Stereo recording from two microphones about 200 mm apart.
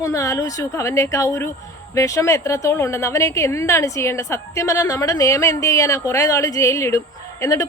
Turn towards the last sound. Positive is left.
turn(degrees=15)  # may be behind; listen again after turning